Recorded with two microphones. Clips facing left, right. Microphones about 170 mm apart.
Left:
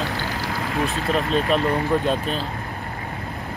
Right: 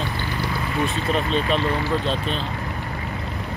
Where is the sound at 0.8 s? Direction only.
Centre (ahead or behind).